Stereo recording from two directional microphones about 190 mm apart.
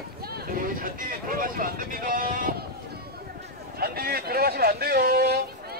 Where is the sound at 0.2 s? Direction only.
55° right (ahead or behind).